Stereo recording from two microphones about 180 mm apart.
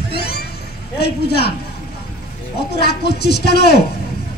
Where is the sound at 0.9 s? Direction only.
65° left (ahead or behind).